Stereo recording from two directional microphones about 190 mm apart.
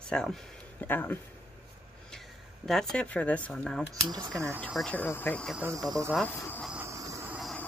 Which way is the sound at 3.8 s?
15° right (ahead or behind).